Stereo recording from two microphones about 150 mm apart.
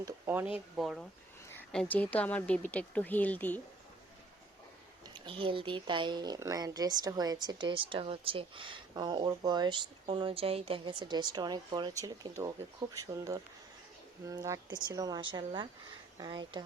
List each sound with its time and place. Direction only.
0.0 s speech: 15° right (ahead or behind); by 3.6 s 10° left (ahead or behind)
5.1 s speech: 35° right (ahead or behind)